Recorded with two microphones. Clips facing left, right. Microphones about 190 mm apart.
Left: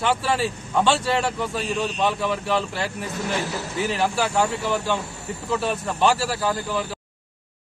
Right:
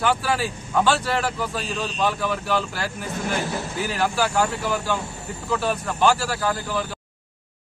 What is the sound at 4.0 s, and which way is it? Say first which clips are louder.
A man's voice: right 1 dB; centre (ahead or behind).